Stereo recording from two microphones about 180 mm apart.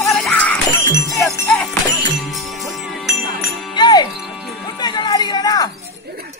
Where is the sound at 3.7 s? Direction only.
25° left (ahead or behind).